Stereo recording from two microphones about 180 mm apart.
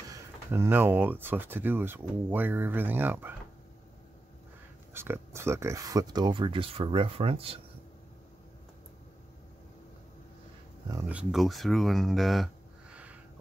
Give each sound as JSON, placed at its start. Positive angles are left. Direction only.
{"t": 0.1, "sound": "speech", "side_deg": -15}
{"t": 4.9, "sound": "speech", "side_deg": -15}
{"t": 11.1, "sound": "speech", "side_deg": -5}
{"t": 12.9, "sound": "a sound", "side_deg": -10}